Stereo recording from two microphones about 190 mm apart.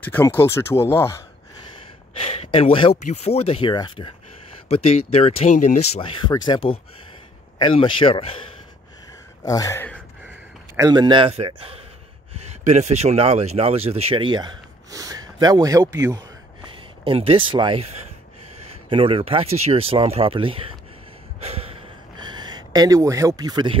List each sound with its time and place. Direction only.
0.0 s speech: 10° left (ahead or behind)
2.1 s speech: 30° left (ahead or behind)
5.9 s speech: 25° left (ahead or behind)
9.4 s speech: 15° left (ahead or behind)
10.8 s speech: 20° right (ahead or behind)
17.0 s speech: 30° right (ahead or behind)
18.9 s speech: 30° right (ahead or behind)
21.5 s gasp: 30° right (ahead or behind)